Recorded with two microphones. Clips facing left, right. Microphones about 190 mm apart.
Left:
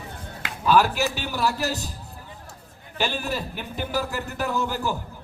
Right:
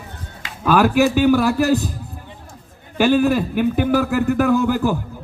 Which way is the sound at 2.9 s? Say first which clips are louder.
Right 12 dB; 55° right (ahead or behind).